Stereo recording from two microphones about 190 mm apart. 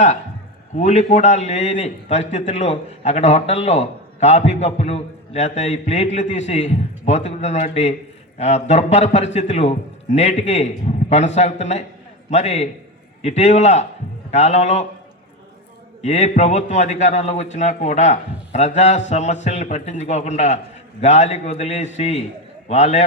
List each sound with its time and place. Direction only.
0.8 s a man's voice: 35° left (ahead or behind)
16.0 s a man's voice: 35° left (ahead or behind)